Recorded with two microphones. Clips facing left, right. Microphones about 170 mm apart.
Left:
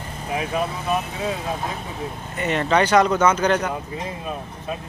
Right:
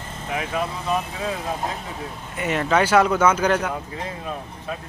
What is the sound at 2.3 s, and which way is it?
Speech, 5° right (ahead or behind).